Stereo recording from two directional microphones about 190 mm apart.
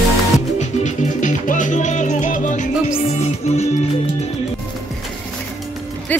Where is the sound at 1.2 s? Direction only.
40° left (ahead or behind).